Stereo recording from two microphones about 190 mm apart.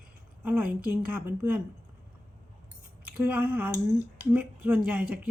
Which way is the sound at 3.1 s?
5° right (ahead or behind).